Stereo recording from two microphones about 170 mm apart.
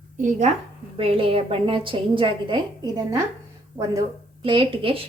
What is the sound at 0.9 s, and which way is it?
A woman's voice, 35° right (ahead or behind).